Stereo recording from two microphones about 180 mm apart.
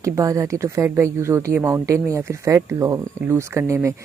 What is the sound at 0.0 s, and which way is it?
Speech, 20° right (ahead or behind).